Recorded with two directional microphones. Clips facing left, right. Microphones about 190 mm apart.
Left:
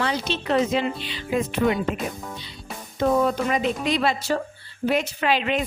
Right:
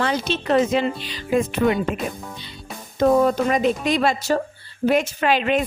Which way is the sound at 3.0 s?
45° right (ahead or behind).